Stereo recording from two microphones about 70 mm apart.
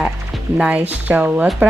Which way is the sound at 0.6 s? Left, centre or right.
Right.